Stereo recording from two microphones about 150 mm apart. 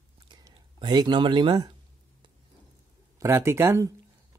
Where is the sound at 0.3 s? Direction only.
25° right (ahead or behind).